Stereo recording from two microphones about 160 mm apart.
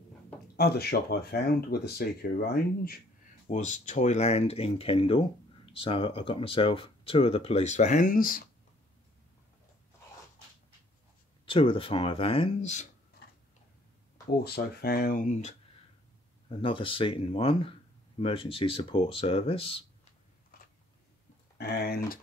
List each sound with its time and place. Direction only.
0.6 s speech: 80° left
3.4 s speech: 50° left (ahead or behind)
11.4 s speech: 35° left (ahead or behind)
14.4 s speech: 80° left; by 15.5 s 50° left (ahead or behind)
16.4 s speech: 35° left (ahead or behind)
21.5 s speech: 75° left (ahead or behind)